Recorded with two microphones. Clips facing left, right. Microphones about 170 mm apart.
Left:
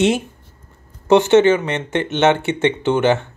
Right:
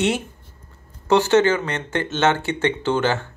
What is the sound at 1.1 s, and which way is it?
Speech, 20° left (ahead or behind).